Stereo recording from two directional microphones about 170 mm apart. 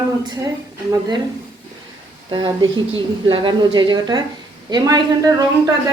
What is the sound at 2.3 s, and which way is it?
Speech, 25° right (ahead or behind).